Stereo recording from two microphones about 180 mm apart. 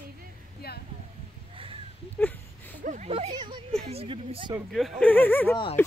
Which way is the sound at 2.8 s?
40° right (ahead or behind).